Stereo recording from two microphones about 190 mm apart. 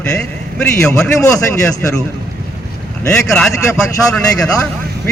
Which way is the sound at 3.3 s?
Centre (ahead or behind).